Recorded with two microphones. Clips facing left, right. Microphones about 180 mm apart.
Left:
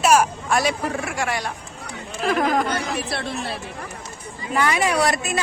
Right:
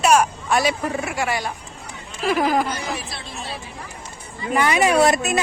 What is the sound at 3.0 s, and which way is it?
Speech, 65° left (ahead or behind).